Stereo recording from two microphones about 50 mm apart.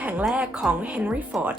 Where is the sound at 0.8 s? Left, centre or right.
Right.